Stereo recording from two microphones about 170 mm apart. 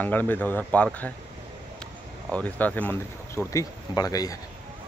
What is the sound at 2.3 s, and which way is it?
Speech, 10° left (ahead or behind).